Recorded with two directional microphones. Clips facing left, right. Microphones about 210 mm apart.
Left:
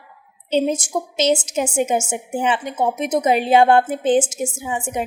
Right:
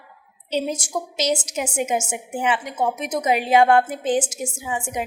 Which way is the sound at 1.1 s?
25° left (ahead or behind).